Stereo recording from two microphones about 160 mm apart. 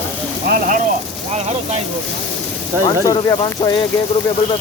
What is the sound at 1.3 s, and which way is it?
Speech, 45° right (ahead or behind).